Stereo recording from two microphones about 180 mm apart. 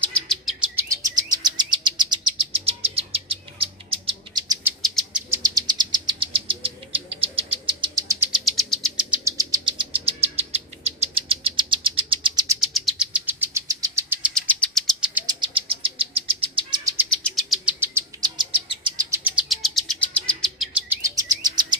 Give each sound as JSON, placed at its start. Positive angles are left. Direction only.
{"t": 0.0, "sound": "chirp", "side_deg": 0}
{"t": 0.8, "sound": "chirp", "side_deg": -20}
{"t": 4.8, "sound": "bird", "side_deg": 0}
{"t": 5.3, "sound": "bird", "side_deg": -20}
{"t": 8.3, "sound": "bird", "side_deg": 0}
{"t": 9.2, "sound": "bird", "side_deg": -20}
{"t": 12.5, "sound": "bird", "side_deg": 0}
{"t": 14.3, "sound": "bird", "side_deg": 5}
{"t": 15.2, "sound": "bird", "side_deg": -30}
{"t": 17.1, "sound": "bird", "side_deg": 0}
{"t": 17.7, "sound": "chirp", "side_deg": -15}
{"t": 18.4, "sound": "bird", "side_deg": -25}
{"t": 19.0, "sound": "bird", "side_deg": -5}
{"t": 21.1, "sound": "chirp", "side_deg": -20}